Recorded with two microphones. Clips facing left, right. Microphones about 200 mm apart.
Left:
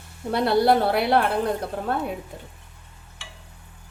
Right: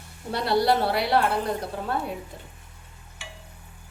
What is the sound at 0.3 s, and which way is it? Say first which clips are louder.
Speech: left 3 dB; 55° left (ahead or behind).